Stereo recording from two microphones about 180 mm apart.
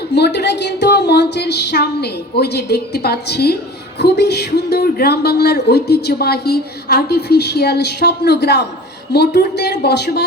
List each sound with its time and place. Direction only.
0.1 s speech: 70° left (ahead or behind)